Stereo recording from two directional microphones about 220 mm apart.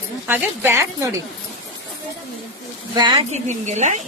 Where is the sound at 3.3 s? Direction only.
30° right (ahead or behind).